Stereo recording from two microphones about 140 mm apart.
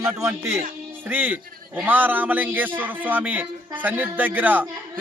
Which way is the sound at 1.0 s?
15° right (ahead or behind).